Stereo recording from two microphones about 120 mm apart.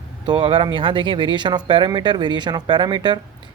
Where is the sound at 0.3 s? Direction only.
40° right (ahead or behind).